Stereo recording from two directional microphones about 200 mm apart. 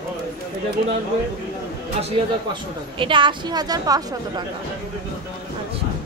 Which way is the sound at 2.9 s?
25° right (ahead or behind).